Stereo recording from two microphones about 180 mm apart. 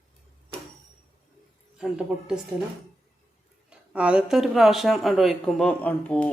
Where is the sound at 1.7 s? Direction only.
5° right (ahead or behind).